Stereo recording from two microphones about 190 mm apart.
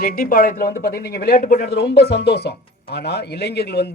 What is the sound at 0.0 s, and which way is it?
Speech, 50° left (ahead or behind).